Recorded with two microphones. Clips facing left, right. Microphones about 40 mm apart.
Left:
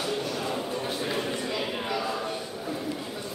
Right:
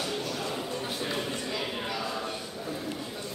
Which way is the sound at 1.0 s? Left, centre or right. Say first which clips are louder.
Left 3 dB; centre.